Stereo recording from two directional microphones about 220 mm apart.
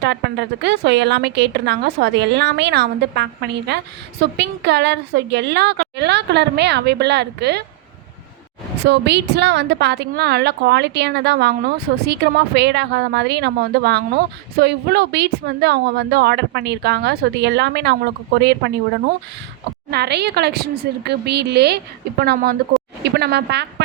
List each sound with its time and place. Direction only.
0.0 s speech: 50° right (ahead or behind)
8.8 s speech: 50° right (ahead or behind)
19.9 s speech: 50° right (ahead or behind)